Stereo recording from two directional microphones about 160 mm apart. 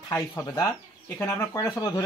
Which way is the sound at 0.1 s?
20° left (ahead or behind).